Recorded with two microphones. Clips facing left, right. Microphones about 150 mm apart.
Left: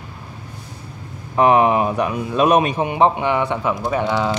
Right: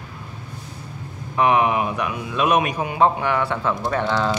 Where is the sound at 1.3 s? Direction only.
35° left (ahead or behind); by 4.4 s 15° left (ahead or behind).